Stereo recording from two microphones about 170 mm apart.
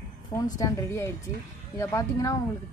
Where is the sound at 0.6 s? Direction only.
20° left (ahead or behind).